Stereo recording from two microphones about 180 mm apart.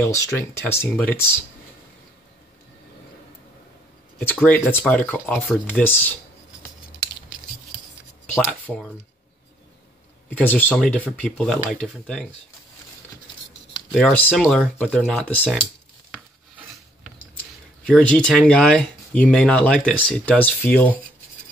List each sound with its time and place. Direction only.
0.0 s speech: 15° left (ahead or behind)
4.2 s speech: 10° left (ahead or behind)
8.4 s speech: 5° left (ahead or behind)
10.3 s speech: 10° left (ahead or behind)
13.9 s speech: 5° left (ahead or behind)
17.8 s speech: 5° left (ahead or behind)